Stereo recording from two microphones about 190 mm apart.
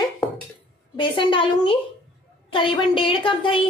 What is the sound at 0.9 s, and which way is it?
A woman's voice, 25° left (ahead or behind).